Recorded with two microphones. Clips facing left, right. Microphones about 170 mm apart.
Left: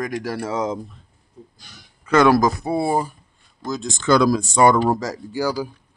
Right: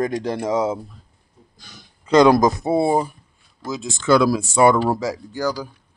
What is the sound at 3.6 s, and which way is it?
Speech, centre (ahead or behind).